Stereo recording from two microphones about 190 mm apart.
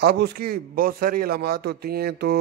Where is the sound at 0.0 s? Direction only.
55° right (ahead or behind).